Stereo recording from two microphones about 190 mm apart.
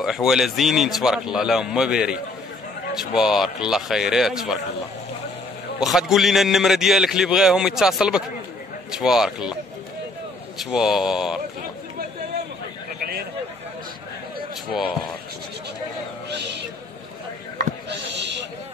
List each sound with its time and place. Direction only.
0.0 s a man's voice: centre (ahead or behind)
5.8 s a man's voice: centre (ahead or behind)
10.6 s a man's voice: 5° right (ahead or behind)
16.3 s music: 65° right (ahead or behind)
17.8 s a sound: 65° right (ahead or behind)